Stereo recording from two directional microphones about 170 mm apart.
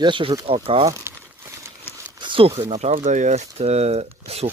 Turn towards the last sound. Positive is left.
turn(degrees=-35)  # may be behind; listen again after turning